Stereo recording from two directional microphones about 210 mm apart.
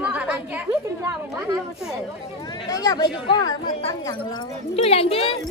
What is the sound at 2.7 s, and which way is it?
Speech, 15° left (ahead or behind).